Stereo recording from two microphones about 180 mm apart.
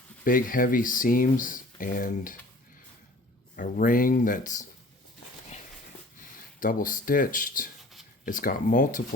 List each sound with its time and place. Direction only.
0.3 s speech: 50° left (ahead or behind)
3.5 s speech: 50° left (ahead or behind)
6.6 s speech: 50° left (ahead or behind)